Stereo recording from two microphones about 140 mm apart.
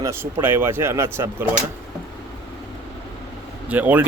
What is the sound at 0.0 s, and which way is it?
Speech, 20° right (ahead or behind).